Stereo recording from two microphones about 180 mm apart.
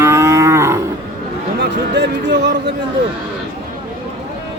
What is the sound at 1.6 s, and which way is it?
Speech, 70° right (ahead or behind).